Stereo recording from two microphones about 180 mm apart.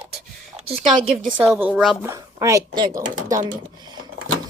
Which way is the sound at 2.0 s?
15° right (ahead or behind).